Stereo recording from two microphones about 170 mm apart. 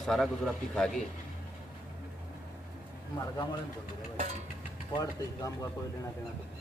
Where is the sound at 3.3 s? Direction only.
25° left (ahead or behind).